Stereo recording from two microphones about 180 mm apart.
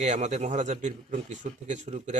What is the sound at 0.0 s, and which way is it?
A man's voice, 40° right (ahead or behind).